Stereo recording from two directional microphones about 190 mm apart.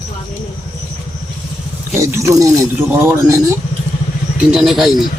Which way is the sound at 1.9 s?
15° right (ahead or behind).